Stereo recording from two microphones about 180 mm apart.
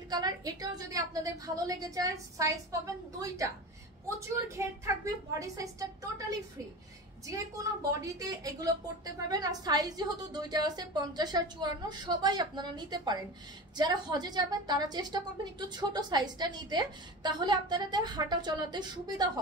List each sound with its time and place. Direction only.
0.1 s a woman's voice: 20° right (ahead or behind)
4.6 s a woman's voice: 15° right (ahead or behind)
7.9 s a woman's voice: 20° right (ahead or behind)